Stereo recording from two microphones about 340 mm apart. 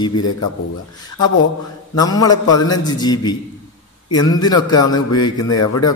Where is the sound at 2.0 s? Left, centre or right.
Centre.